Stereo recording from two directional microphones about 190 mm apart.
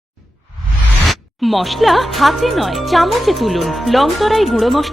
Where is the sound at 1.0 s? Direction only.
Centre (ahead or behind).